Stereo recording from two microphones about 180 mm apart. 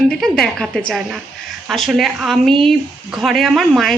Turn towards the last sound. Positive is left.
turn(degrees=0)  # may be behind; listen again after turning